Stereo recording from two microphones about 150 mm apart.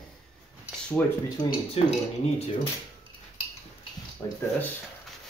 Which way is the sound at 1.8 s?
40° left (ahead or behind).